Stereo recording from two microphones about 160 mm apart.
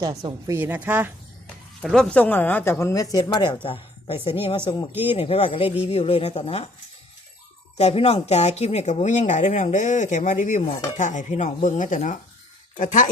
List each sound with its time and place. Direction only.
0.0 s a woman's voice: 25° right (ahead or behind)
1.8 s speech: 5° left (ahead or behind); by 6.7 s 40° left (ahead or behind)
7.8 s speech: 40° left (ahead or behind)